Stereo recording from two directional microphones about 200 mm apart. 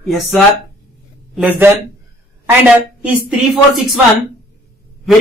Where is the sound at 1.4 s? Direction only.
10° right (ahead or behind).